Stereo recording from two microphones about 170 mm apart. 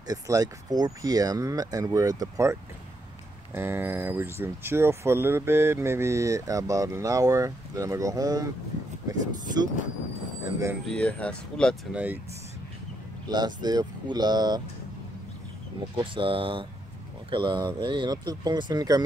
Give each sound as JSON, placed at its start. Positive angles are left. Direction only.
{"t": 0.0, "sound": "speech", "side_deg": -20}
{"t": 3.5, "sound": "speech", "side_deg": -15}
{"t": 10.9, "sound": "speech", "side_deg": 5}
{"t": 11.9, "sound": "speech", "side_deg": -10}
{"t": 13.3, "sound": "speech", "side_deg": -25}
{"t": 16.0, "sound": "speech", "side_deg": -30}